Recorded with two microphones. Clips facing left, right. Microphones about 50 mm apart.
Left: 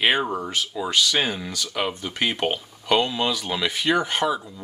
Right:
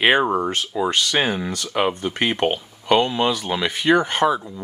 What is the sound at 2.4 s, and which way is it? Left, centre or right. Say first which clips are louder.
Speech: right 4 dB; centre.